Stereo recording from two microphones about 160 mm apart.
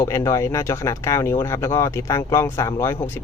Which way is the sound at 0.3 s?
15° left (ahead or behind).